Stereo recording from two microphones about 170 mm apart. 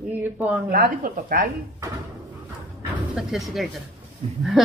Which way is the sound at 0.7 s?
60° right (ahead or behind).